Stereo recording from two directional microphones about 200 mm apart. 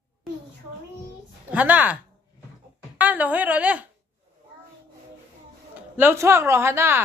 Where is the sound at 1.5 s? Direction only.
10° right (ahead or behind).